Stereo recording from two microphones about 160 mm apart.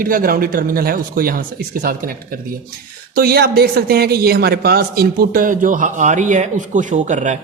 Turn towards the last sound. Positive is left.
turn(degrees=-50)  # may be behind; listen again after turning